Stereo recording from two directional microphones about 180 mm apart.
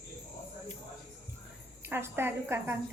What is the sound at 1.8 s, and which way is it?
Speech, 10° right (ahead or behind).